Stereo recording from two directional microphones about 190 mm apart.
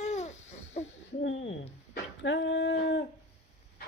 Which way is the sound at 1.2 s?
75° left (ahead or behind).